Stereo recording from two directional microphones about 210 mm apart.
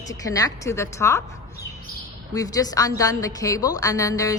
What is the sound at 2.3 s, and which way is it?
A woman's voice, 15° left (ahead or behind).